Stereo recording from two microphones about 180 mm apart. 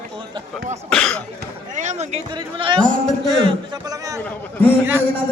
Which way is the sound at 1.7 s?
40° right (ahead or behind).